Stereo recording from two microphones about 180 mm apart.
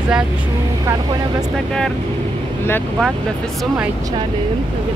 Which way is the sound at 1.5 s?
5° left (ahead or behind).